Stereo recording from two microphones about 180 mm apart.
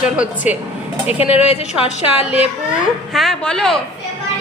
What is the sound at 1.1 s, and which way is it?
Speech, 35° left (ahead or behind).